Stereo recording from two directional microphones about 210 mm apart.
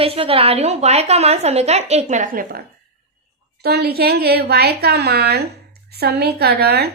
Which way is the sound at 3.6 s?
50° right (ahead or behind).